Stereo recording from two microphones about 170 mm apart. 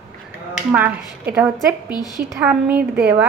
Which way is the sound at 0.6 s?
10° right (ahead or behind).